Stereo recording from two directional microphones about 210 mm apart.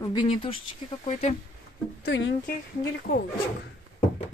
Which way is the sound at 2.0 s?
55° left (ahead or behind).